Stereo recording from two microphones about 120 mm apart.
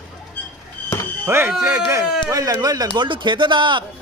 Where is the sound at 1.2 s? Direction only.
20° right (ahead or behind).